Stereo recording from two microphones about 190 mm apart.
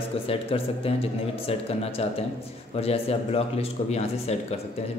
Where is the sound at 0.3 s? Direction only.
30° left (ahead or behind).